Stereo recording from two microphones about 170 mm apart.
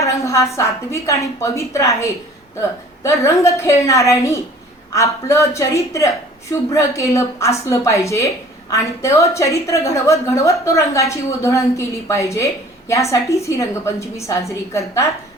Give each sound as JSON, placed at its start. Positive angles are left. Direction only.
{"t": 0.0, "sound": "a woman's voice", "side_deg": 20}